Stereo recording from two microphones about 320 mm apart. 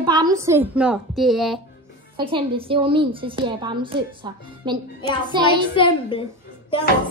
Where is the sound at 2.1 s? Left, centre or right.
Centre.